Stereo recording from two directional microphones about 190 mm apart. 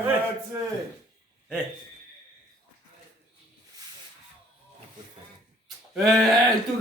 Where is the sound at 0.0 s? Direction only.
10° right (ahead or behind).